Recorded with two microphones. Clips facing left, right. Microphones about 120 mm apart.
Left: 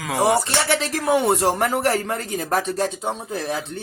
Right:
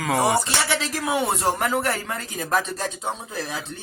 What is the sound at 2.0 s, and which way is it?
Speech, 50° left (ahead or behind).